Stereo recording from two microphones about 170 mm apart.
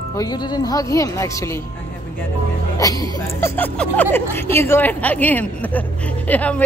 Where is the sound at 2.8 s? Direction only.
20° left (ahead or behind).